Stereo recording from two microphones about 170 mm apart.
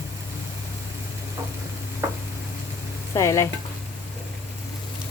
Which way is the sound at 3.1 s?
20° left (ahead or behind).